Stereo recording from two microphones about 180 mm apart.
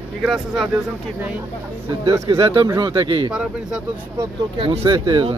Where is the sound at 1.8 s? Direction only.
15° right (ahead or behind).